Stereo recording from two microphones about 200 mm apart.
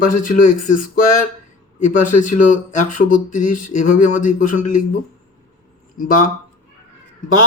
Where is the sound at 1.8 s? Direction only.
40° left (ahead or behind).